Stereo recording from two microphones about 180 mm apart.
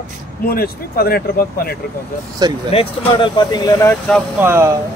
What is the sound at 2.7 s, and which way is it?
Speech, 30° left (ahead or behind).